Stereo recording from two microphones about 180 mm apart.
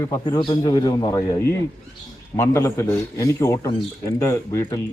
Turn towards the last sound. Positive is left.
turn(degrees=15)  # may be behind; listen again after turning